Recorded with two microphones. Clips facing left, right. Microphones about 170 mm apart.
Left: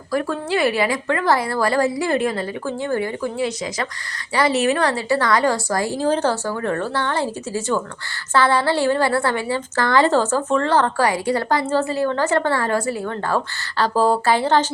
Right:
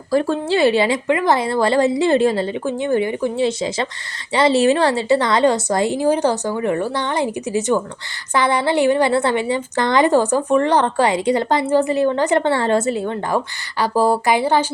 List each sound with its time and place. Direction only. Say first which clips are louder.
0.1 s a woman's voice: right 4 dB; 30° right (ahead or behind); by 14.7 s 10° right (ahead or behind)